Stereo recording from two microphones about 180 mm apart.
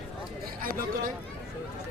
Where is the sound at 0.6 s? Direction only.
50° right (ahead or behind).